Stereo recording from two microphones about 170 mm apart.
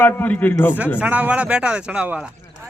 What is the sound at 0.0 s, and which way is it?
Speech, 10° left (ahead or behind).